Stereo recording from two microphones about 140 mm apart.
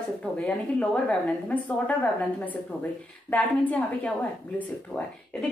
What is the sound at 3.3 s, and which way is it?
Speech, 10° left (ahead or behind).